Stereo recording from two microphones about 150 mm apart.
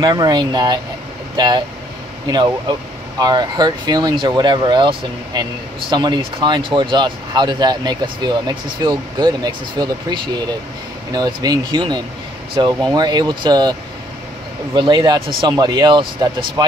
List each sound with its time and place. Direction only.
0.0 s speech: 25° right (ahead or behind)